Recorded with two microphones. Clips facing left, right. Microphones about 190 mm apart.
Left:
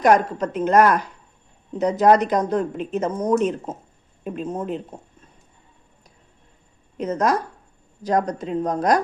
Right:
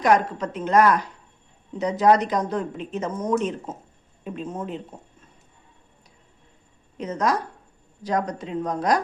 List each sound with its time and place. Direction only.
0.0 s speech: 45° left (ahead or behind)
6.9 s speech: 45° left (ahead or behind)